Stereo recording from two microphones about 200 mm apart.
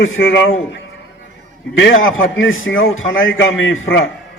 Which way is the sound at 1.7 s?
75° left (ahead or behind).